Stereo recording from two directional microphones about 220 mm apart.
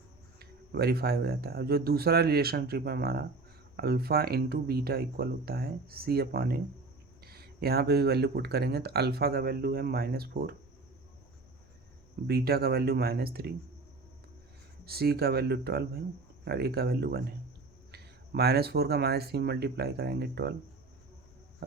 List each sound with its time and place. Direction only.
0.3 s speech: 45° right (ahead or behind)
12.3 s speech: 45° right (ahead or behind)
14.8 s speech: 45° right (ahead or behind)